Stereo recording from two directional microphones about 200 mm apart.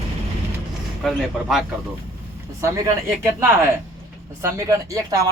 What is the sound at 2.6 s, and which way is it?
Speech, 15° right (ahead or behind).